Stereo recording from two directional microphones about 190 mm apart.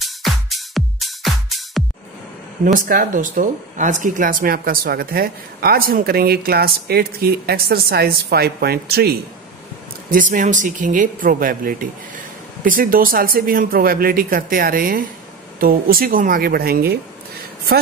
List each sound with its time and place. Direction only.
0.0 s music: centre (ahead or behind)
2.6 s speech: 45° right (ahead or behind)
10.1 s speech: 45° right (ahead or behind)